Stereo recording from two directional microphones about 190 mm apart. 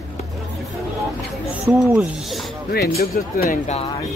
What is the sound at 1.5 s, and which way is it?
Speech, 5° right (ahead or behind).